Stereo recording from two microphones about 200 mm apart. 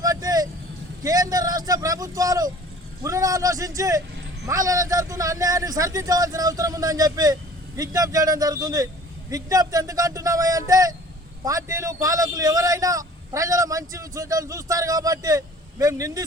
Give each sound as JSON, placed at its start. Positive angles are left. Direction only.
{"t": 0.0, "sound": "vehicle", "side_deg": -20}
{"t": 1.0, "sound": "a man's voice", "side_deg": -20}